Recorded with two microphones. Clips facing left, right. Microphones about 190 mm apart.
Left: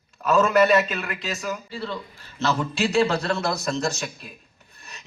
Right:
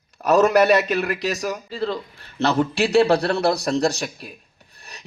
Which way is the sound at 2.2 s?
60° right (ahead or behind).